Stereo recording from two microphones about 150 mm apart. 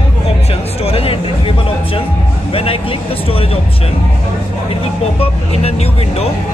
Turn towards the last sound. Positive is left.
turn(degrees=40)  # may be behind; listen again after turning